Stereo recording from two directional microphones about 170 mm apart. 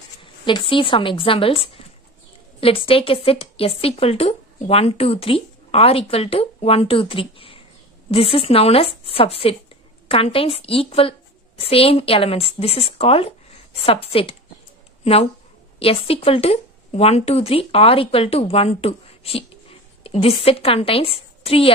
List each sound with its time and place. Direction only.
0.2 s speech: 30° left (ahead or behind)
15.8 s a woman's voice: 35° left (ahead or behind)